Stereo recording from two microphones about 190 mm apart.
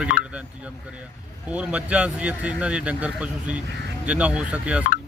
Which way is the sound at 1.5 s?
5° right (ahead or behind).